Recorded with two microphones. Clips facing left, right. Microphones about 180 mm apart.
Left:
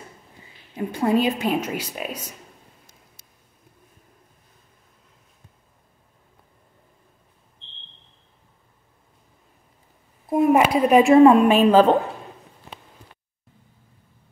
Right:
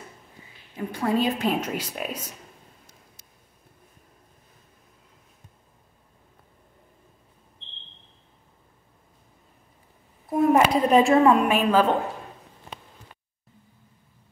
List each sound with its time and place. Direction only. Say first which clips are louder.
0.7 s a woman's voice: left 4 dB; 25° left (ahead or behind)
1.2 s a woman's voice: left 2 dB; 5° left (ahead or behind)
10.3 s a woman's voice: left 2 dB; 10° left (ahead or behind); by 11.9 s 30° left (ahead or behind)